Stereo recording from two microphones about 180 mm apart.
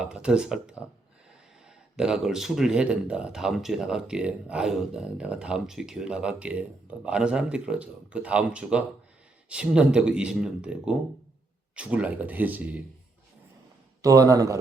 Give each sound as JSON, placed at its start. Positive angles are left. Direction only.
{"t": 0.0, "sound": "speech", "side_deg": -5}
{"t": 2.0, "sound": "speech", "side_deg": -5}
{"t": 14.0, "sound": "speech", "side_deg": -20}